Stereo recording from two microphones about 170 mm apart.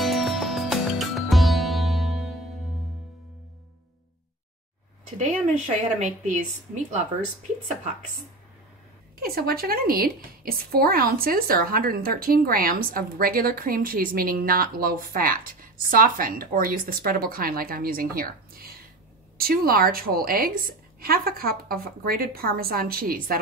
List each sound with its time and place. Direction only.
0.0 s music: centre (ahead or behind)
5.9 s a woman's voice: 45° right (ahead or behind)
9.2 s a woman's voice: 65° right (ahead or behind)